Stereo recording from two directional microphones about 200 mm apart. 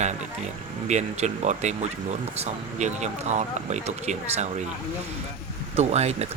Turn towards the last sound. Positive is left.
turn(degrees=-35)  # may be behind; listen again after turning